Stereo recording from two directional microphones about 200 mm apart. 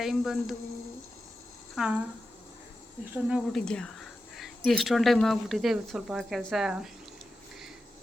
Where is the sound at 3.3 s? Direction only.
5° left (ahead or behind).